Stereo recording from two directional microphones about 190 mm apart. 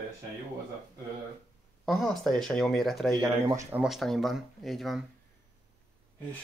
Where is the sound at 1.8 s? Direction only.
Centre (ahead or behind).